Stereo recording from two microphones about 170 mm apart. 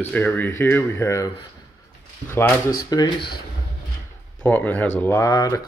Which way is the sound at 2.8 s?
25° left (ahead or behind).